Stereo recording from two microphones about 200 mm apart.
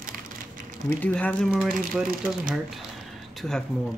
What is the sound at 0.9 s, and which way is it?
Speech, 5° left (ahead or behind).